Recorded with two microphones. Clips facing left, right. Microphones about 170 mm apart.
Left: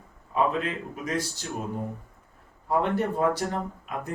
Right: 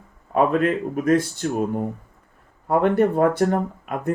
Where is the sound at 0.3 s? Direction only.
55° right (ahead or behind).